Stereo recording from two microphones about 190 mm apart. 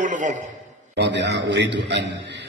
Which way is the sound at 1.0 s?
65° right (ahead or behind).